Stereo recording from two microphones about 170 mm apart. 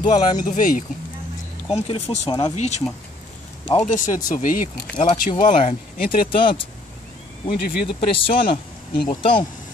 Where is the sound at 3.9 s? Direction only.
50° left (ahead or behind).